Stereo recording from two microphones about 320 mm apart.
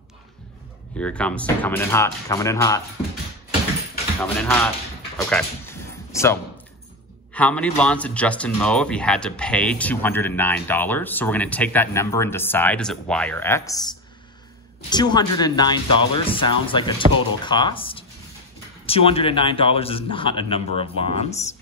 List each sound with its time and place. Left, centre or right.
0.9 s speech: centre
4.2 s speech: centre
5.1 s a sound: centre
7.3 s speech: centre